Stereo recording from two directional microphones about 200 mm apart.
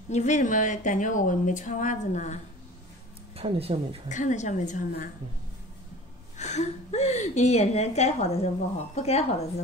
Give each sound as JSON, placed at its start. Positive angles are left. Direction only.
{"t": 0.1, "sound": "a woman's voice", "side_deg": 35}
{"t": 3.3, "sound": "speech", "side_deg": -30}
{"t": 4.1, "sound": "a woman's voice", "side_deg": 40}
{"t": 6.3, "sound": "a woman's voice", "side_deg": 35}